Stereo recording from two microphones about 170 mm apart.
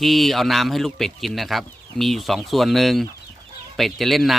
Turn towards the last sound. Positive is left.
turn(degrees=0)  # may be behind; listen again after turning